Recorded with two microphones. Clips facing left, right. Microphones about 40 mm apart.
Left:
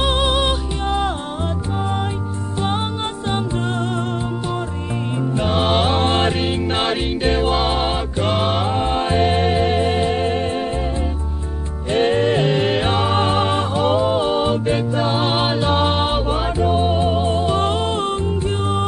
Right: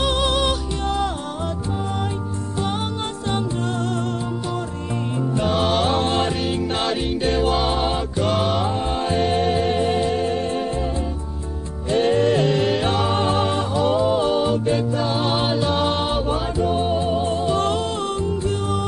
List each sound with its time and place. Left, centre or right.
0.0 s music: left
5.3 s music: left
11.9 s music: left